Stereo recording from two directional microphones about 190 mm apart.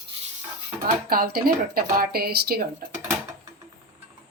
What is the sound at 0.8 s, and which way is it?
Speech, 50° right (ahead or behind).